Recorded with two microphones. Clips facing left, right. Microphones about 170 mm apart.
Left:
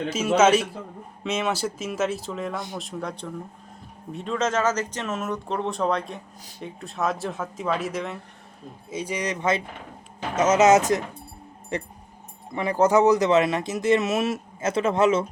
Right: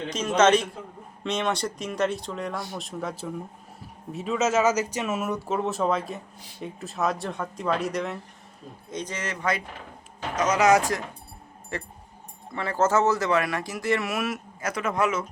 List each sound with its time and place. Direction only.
0.3 s speech: 5° left (ahead or behind); by 15.2 s 25° left (ahead or behind)